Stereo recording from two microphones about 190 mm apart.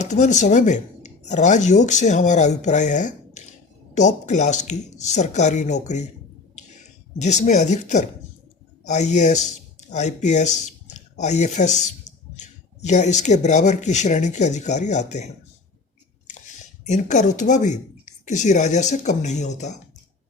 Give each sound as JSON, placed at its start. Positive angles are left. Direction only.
{"t": 0.0, "sound": "speech", "side_deg": 40}
{"t": 16.8, "sound": "speech", "side_deg": 40}